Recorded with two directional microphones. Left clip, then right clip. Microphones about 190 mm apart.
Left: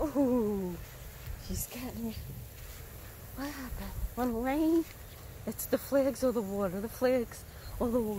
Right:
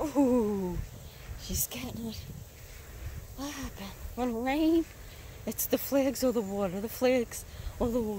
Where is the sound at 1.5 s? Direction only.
40° right (ahead or behind).